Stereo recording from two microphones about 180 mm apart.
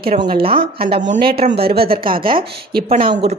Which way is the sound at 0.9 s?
60° right (ahead or behind).